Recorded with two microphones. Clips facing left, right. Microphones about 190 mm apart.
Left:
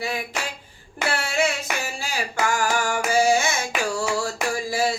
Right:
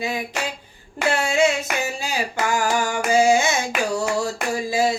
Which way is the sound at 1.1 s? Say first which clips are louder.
Right 5 dB; 20° right (ahead or behind).